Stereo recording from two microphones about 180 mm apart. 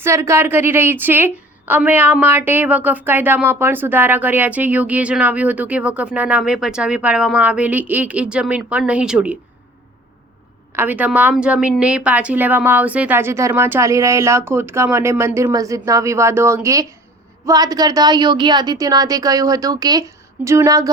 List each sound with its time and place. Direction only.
0.0 s a woman's voice: 15° right (ahead or behind)
10.7 s a woman's voice: 10° right (ahead or behind)